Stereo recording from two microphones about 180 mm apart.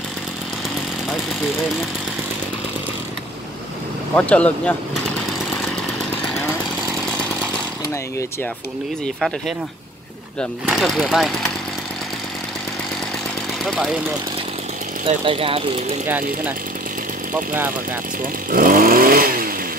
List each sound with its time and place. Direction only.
4.1 s speech: 10° left (ahead or behind)
10.6 s speech: centre (ahead or behind)
13.7 s speech: 5° right (ahead or behind)
15.0 s speech: 30° right (ahead or behind)
16.1 s speech: 10° right (ahead or behind)
18.5 s vehicle: 50° right (ahead or behind)